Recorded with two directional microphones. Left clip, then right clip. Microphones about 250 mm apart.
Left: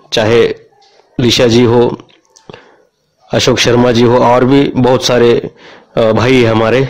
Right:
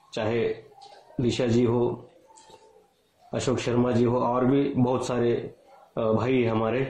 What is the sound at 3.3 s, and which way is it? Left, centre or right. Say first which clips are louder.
A man's voice: left 17 dB; left.